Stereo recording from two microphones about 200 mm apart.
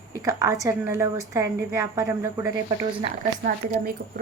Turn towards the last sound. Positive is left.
turn(degrees=-45)  # may be behind; listen again after turning